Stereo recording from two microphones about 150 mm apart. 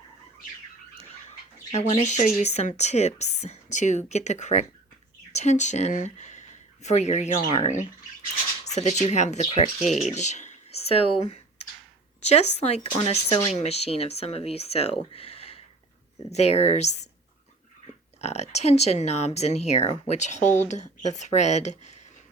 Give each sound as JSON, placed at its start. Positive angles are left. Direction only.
{"t": 1.7, "sound": "speech", "side_deg": 45}
{"t": 18.2, "sound": "speech", "side_deg": 45}